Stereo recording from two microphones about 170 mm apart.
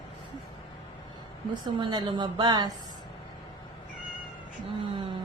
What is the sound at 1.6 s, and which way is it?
Speech, 25° right (ahead or behind).